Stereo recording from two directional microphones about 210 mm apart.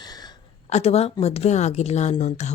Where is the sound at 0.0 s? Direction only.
20° left (ahead or behind).